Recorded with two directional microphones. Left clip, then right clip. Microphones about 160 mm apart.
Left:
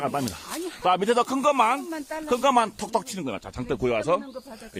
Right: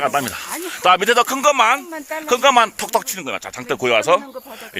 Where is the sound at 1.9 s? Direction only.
55° right (ahead or behind).